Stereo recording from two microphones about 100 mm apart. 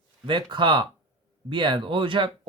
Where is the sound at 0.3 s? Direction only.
50° right (ahead or behind).